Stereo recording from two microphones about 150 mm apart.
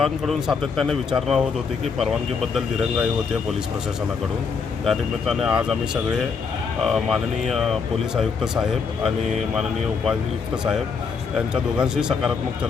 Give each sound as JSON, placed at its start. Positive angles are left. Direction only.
{"t": 0.0, "sound": "speech", "side_deg": 0}
{"t": 4.9, "sound": "speech", "side_deg": 0}
{"t": 10.1, "sound": "speech", "side_deg": -5}